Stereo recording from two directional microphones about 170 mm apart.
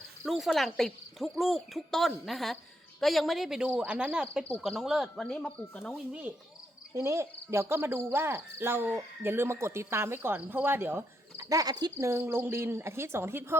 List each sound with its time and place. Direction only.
0.3 s speech: centre (ahead or behind)
6.1 s speech: 10° right (ahead or behind)